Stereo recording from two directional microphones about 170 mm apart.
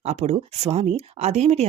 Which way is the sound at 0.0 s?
40° right (ahead or behind).